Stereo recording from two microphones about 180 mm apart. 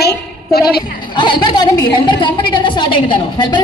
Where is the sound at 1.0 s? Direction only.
25° left (ahead or behind).